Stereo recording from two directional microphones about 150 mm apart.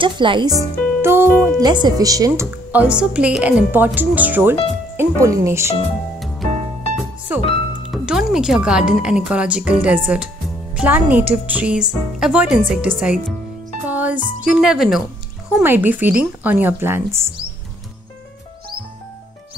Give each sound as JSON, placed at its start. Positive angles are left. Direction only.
{"t": 0.0, "sound": "speech", "side_deg": -35}
{"t": 1.6, "sound": "speech", "side_deg": -30}
{"t": 2.7, "sound": "a woman's voice", "side_deg": -10}
{"t": 6.1, "sound": "music", "side_deg": 0}
{"t": 7.0, "sound": "music", "side_deg": -10}
{"t": 7.9, "sound": "a woman's voice", "side_deg": -5}
{"t": 15.6, "sound": "a woman's voice", "side_deg": -15}